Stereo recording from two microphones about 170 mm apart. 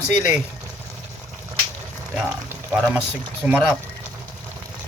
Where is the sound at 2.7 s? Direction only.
5° right (ahead or behind).